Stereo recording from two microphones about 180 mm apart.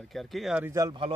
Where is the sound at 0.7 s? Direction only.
25° right (ahead or behind).